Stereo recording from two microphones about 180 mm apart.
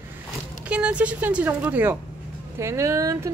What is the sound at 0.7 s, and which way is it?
Speech, 5° right (ahead or behind).